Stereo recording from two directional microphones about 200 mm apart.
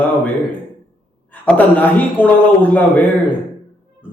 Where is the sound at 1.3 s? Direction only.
10° left (ahead or behind).